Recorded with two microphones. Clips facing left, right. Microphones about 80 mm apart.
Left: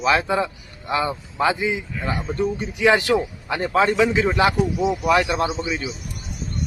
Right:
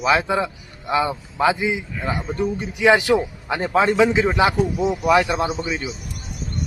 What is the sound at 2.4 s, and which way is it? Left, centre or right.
A man's voice, centre.